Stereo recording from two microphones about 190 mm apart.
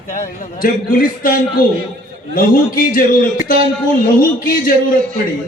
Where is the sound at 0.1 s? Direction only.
45° left (ahead or behind).